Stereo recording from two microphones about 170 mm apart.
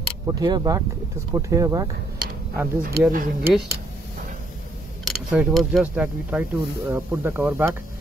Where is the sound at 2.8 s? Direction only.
65° right (ahead or behind).